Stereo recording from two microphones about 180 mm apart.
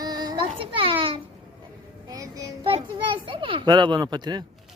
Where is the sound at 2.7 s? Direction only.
30° right (ahead or behind).